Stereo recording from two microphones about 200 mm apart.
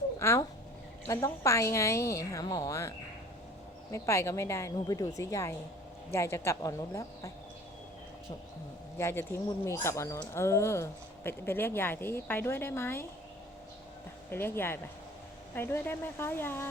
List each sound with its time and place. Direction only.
0.2 s speech: 15° left (ahead or behind)
3.9 s speech: 15° left (ahead or behind)
9.0 s speech: 10° left (ahead or behind)
14.3 s speech: 10° left (ahead or behind)